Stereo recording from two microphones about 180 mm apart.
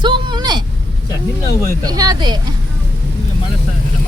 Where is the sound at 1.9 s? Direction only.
20° right (ahead or behind).